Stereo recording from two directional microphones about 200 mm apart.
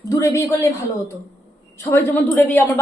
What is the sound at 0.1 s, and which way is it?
Speech, 15° left (ahead or behind).